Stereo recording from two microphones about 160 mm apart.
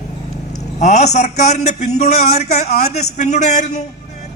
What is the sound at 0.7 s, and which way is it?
A man's voice, 45° left (ahead or behind).